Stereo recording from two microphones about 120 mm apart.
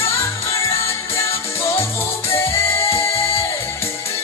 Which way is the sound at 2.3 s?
20° left (ahead or behind).